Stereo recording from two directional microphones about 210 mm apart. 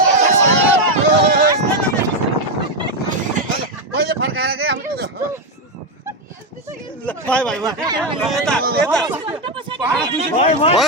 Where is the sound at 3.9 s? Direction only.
50° right (ahead or behind).